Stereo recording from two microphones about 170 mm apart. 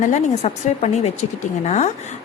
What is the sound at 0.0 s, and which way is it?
A woman's voice, 45° left (ahead or behind).